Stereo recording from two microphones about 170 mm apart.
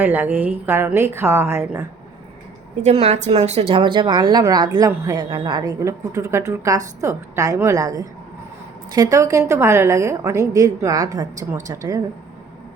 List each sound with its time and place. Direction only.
0.0 s a woman's voice: 10° right (ahead or behind)
2.8 s a woman's voice: 40° right (ahead or behind); by 11.9 s 20° right (ahead or behind)